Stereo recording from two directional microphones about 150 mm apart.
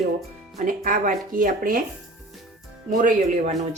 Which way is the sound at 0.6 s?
60° right (ahead or behind).